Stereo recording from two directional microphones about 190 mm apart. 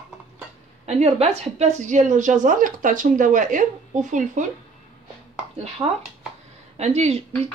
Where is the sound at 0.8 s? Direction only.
35° right (ahead or behind).